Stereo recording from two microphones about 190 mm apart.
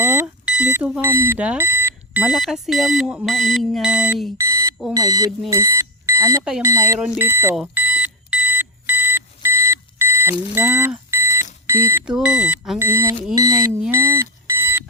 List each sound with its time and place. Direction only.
0.0 s speech: 10° right (ahead or behind)
4.4 s alarm clock: 15° right (ahead or behind)
4.9 s speech: 20° right (ahead or behind)
5.5 s smoke detector: 15° right (ahead or behind)
6.6 s speech: 15° right (ahead or behind)
7.5 s alarm clock: 5° right (ahead or behind)
10.5 s beep: 10° right (ahead or behind)
11.6 s speech: 15° right (ahead or behind)
13.8 s alarm clock: 15° right (ahead or behind)